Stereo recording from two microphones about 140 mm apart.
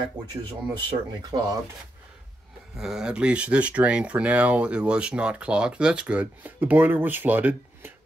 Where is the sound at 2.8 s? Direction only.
5° right (ahead or behind).